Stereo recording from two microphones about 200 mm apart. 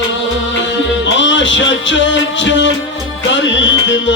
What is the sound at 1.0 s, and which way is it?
Music, 65° left (ahead or behind).